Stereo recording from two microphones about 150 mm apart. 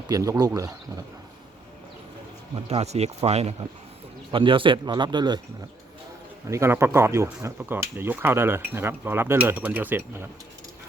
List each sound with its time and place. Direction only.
0.1 s speech: 25° right (ahead or behind)
2.6 s speech: 45° right (ahead or behind)
4.3 s a man's voice: 35° right (ahead or behind)
6.5 s speech: 15° right (ahead or behind)